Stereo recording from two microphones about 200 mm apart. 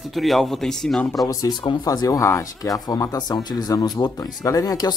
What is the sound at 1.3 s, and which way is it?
Speech, 20° left (ahead or behind).